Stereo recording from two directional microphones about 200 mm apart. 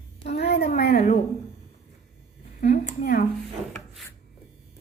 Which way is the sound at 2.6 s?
40° left (ahead or behind).